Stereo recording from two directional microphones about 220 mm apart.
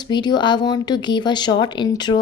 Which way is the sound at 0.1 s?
20° left (ahead or behind).